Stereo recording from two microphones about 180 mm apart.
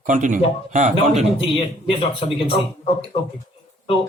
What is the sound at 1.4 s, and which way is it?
Speech, 30° left (ahead or behind).